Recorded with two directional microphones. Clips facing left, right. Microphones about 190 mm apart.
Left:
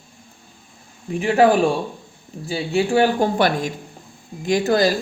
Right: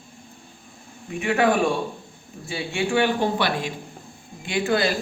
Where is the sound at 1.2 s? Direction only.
35° left (ahead or behind).